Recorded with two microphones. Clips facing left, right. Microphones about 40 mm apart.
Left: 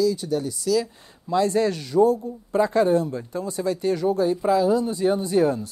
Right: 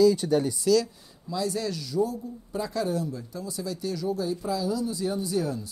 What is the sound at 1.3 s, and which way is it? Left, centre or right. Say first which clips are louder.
Speech: left 9 dB; left.